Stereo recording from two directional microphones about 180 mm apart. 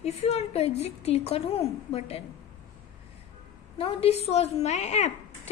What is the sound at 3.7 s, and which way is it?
A woman's voice, 35° left (ahead or behind).